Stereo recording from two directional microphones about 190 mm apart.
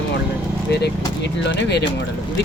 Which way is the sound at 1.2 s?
65° left (ahead or behind).